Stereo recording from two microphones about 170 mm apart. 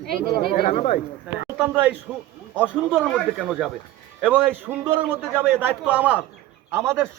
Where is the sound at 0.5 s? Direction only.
55° left (ahead or behind).